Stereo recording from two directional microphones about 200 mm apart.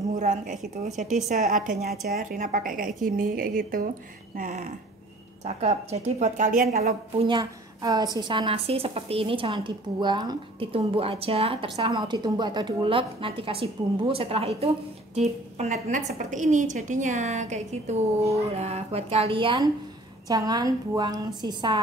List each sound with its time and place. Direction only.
0.1 s a woman's voice: 40° right (ahead or behind); by 21.7 s 20° right (ahead or behind)